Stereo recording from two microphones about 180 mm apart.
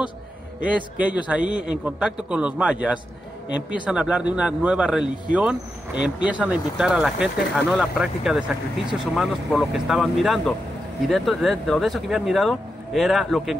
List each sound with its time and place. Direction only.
0.6 s a man's voice: 5° right (ahead or behind)